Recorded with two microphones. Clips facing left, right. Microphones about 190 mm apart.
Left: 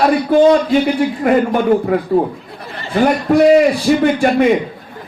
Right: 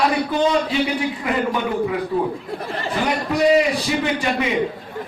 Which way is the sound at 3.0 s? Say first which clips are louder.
Left 8 dB; 50° left (ahead or behind).